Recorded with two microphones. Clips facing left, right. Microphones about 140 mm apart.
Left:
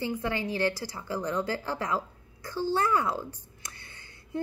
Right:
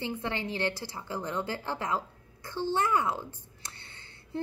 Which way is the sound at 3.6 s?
30° right (ahead or behind).